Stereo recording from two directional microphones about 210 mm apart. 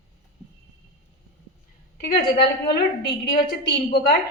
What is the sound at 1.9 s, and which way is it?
A woman's voice, 50° left (ahead or behind).